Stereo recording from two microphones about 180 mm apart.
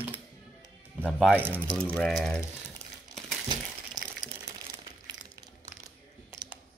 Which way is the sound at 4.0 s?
20° right (ahead or behind).